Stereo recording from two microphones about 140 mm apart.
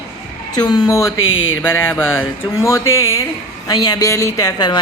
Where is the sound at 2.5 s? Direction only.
20° left (ahead or behind).